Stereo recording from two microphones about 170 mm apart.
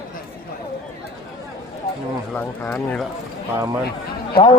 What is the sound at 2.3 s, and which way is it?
Speech, 5° left (ahead or behind).